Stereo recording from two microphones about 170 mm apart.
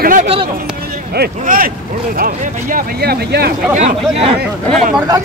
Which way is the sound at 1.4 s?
55° right (ahead or behind).